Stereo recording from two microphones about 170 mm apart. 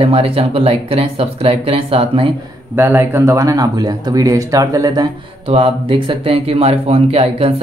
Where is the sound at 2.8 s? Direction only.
15° right (ahead or behind).